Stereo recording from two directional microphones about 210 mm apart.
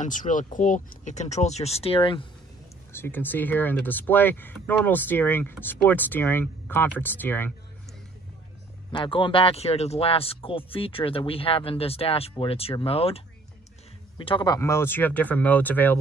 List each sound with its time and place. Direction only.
0.0 s speech: 40° left (ahead or behind)
2.9 s speech: 10° left (ahead or behind)
8.9 s speech: 25° left (ahead or behind)